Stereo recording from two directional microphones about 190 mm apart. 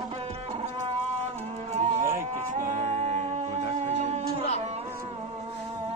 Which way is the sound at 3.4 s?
35° right (ahead or behind).